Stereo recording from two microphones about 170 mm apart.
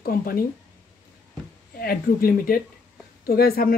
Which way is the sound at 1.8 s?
60° left (ahead or behind).